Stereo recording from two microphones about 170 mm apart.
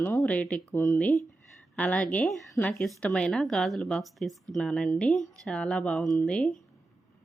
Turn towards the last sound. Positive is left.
turn(degrees=5)  # may be behind; listen again after turning